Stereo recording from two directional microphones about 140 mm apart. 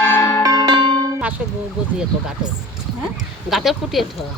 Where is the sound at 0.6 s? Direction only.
30° right (ahead or behind).